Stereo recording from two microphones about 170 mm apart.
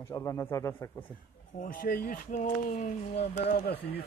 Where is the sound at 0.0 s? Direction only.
20° left (ahead or behind).